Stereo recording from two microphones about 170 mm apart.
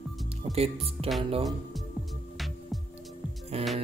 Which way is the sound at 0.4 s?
35° right (ahead or behind).